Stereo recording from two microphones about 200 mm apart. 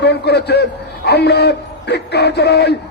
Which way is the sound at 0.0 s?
55° left (ahead or behind).